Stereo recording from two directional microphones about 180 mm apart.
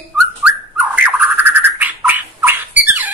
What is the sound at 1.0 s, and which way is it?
Squawk, 10° right (ahead or behind).